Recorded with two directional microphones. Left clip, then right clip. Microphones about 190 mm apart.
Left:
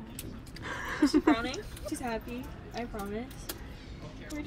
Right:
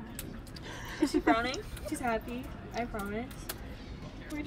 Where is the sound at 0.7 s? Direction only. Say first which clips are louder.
Left 4 dB; 15° left (ahead or behind).